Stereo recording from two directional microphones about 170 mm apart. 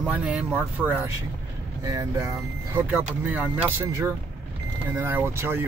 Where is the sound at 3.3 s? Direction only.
10° right (ahead or behind).